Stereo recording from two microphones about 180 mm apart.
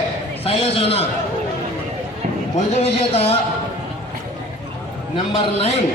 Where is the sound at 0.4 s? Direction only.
35° left (ahead or behind).